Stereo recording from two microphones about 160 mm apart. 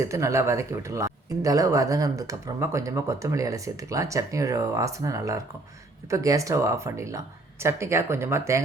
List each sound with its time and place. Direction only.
0.0 s speech: 20° right (ahead or behind)